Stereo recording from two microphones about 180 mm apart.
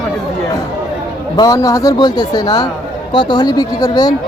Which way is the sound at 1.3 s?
20° left (ahead or behind).